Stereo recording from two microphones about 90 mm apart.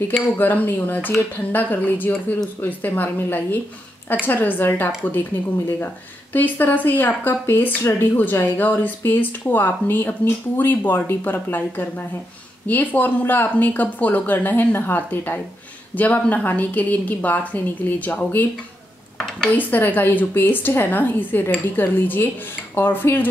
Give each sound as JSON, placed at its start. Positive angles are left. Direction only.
{"t": 0.1, "sound": "speech", "side_deg": 20}
{"t": 6.3, "sound": "a woman's voice", "side_deg": 20}
{"t": 19.5, "sound": "speech", "side_deg": 20}